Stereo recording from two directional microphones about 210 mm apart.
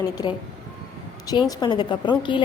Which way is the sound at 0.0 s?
20° left (ahead or behind).